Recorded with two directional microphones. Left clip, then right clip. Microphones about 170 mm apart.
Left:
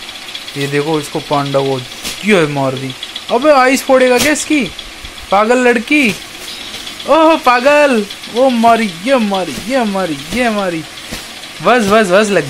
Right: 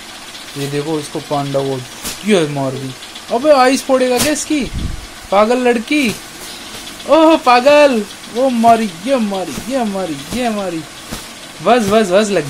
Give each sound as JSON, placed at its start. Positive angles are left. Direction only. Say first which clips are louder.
{"t": 0.8, "sound": "speech", "louder": "left 4 dB", "side_deg": 25}